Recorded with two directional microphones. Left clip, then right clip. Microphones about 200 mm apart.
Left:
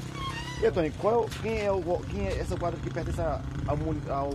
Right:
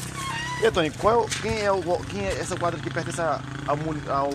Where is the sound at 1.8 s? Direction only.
15° right (ahead or behind).